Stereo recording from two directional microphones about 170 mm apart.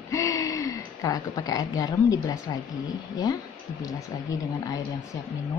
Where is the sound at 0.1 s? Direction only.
20° left (ahead or behind).